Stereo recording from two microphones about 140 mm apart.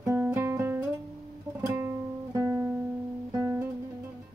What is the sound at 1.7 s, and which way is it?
Music, 15° right (ahead or behind).